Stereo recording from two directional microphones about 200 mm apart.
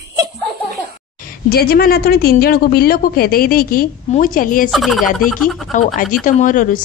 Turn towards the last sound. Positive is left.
turn(degrees=40)  # may be behind; listen again after turning